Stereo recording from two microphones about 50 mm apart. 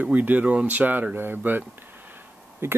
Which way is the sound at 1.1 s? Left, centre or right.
Right.